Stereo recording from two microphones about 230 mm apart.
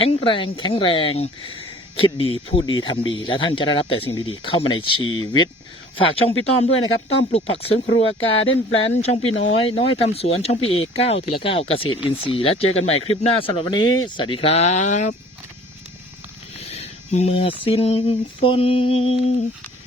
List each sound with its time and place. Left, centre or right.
0.0 s speech: left
6.7 s a sound: left
7.6 s speech: left
8.2 s a sound: left
8.9 s speech: left
16.6 s speech: left